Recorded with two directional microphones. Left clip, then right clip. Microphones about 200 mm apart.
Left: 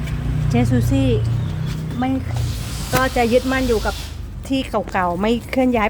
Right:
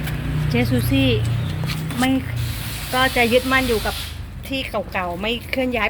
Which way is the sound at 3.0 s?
Centre (ahead or behind).